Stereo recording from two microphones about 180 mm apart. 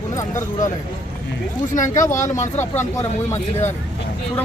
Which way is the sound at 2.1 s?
15° left (ahead or behind).